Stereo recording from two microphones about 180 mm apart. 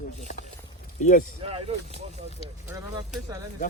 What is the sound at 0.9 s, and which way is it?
Speech, 40° left (ahead or behind).